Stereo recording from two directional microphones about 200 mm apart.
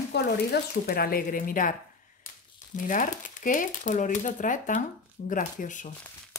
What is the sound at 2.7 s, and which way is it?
Speech, 40° left (ahead or behind).